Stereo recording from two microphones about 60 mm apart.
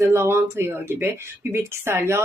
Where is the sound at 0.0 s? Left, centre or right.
Right.